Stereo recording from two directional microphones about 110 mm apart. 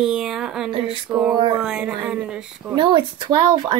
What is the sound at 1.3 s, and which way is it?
Speech, 45° right (ahead or behind).